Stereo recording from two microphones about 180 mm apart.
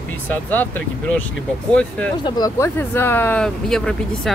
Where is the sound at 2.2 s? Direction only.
20° left (ahead or behind).